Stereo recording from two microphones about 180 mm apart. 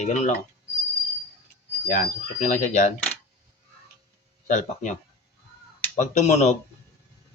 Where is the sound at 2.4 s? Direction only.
40° left (ahead or behind).